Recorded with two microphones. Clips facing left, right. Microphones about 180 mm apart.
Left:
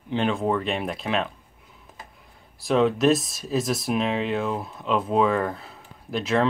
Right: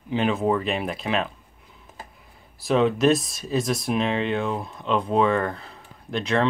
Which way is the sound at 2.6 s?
Centre (ahead or behind).